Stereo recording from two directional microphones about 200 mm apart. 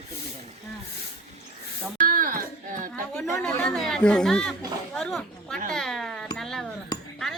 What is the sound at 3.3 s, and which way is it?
Speech, 15° left (ahead or behind).